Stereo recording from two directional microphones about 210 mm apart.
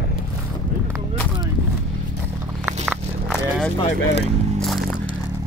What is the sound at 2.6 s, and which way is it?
Walk, 5° right (ahead or behind).